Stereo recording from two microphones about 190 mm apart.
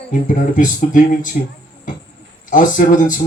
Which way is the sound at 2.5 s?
45° left (ahead or behind).